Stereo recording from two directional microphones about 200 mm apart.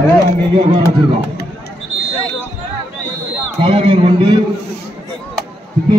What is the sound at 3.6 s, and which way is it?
Speech, 30° right (ahead or behind).